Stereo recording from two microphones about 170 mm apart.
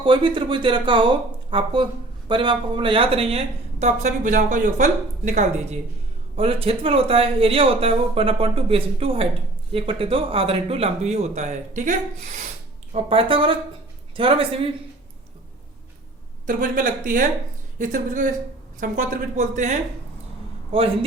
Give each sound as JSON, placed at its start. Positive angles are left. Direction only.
{"t": 0.0, "sound": "speech", "side_deg": -30}
{"t": 12.9, "sound": "speech", "side_deg": -35}
{"t": 16.5, "sound": "speech", "side_deg": -55}